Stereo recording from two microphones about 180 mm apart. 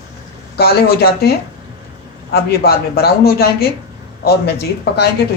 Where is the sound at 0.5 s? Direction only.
60° left (ahead or behind).